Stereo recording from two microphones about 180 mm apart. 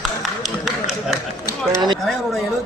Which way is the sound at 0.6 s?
Centre (ahead or behind).